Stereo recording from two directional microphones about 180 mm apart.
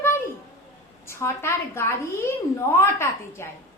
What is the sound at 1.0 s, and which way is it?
A woman's voice, 15° left (ahead or behind).